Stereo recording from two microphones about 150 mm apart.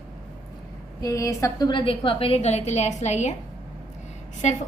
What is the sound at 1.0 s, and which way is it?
A woman's voice, 20° left (ahead or behind).